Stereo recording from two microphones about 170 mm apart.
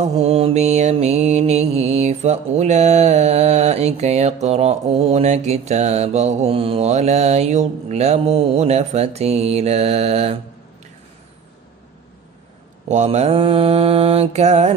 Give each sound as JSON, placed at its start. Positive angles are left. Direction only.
{"t": 0.0, "sound": "mantra", "side_deg": -40}
{"t": 12.8, "sound": "mantra", "side_deg": -40}